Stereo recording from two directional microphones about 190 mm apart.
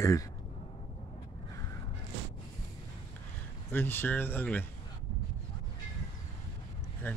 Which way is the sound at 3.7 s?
10° left (ahead or behind).